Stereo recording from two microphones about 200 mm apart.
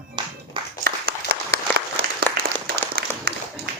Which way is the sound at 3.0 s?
50° right (ahead or behind).